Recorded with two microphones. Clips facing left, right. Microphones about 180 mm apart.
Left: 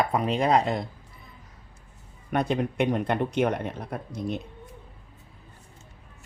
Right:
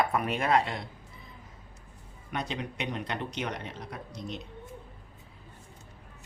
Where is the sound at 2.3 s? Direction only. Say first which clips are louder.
Left 9 dB; 55° left (ahead or behind).